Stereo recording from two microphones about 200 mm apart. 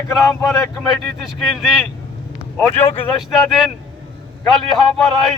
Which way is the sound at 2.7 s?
30° left (ahead or behind).